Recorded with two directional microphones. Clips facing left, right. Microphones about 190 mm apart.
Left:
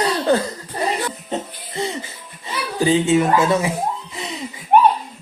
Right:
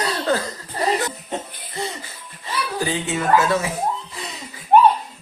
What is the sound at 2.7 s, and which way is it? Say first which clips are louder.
Speech: left 10 dB; 25° left (ahead or behind).